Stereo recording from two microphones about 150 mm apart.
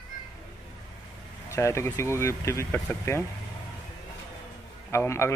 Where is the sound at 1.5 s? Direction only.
20° left (ahead or behind).